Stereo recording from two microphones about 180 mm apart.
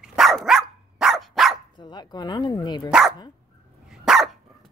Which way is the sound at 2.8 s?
5° right (ahead or behind).